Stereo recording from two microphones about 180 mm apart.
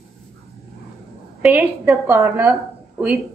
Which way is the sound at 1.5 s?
10° right (ahead or behind).